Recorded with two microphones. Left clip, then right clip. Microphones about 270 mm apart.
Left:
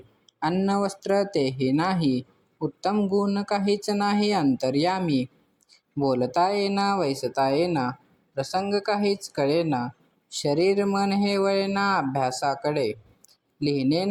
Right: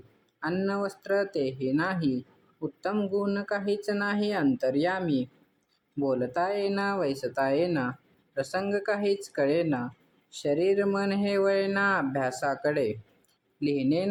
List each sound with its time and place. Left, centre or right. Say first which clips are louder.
0.4 s speech: left 5 dB; centre